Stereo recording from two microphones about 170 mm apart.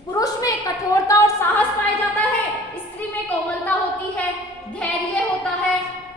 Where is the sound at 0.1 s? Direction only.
20° left (ahead or behind).